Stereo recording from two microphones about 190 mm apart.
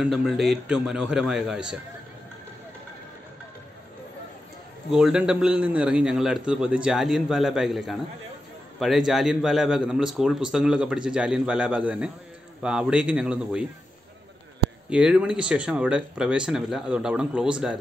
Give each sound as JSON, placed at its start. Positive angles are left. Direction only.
{"t": 0.0, "sound": "a man's voice", "side_deg": 0}
{"t": 4.9, "sound": "a man's voice", "side_deg": -5}
{"t": 14.9, "sound": "a man's voice", "side_deg": -5}